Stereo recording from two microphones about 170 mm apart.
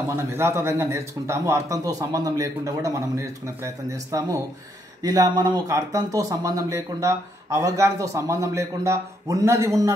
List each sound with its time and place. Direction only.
0.1 s speech: 15° right (ahead or behind)